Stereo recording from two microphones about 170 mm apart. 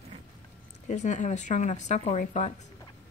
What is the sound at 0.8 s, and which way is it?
Speech, 45° left (ahead or behind).